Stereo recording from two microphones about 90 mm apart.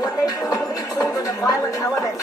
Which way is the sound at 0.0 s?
45° left (ahead or behind).